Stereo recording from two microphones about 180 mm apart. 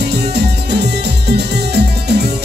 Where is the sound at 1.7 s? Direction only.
65° right (ahead or behind).